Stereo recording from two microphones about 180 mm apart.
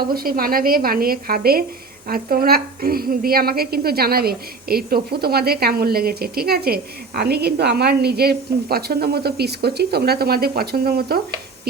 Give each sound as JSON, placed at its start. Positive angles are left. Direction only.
{"t": 0.1, "sound": "a woman's voice", "side_deg": -55}